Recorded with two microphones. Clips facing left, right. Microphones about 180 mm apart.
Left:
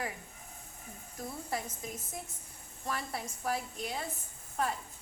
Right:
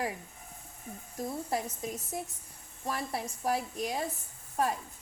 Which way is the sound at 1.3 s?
35° right (ahead or behind).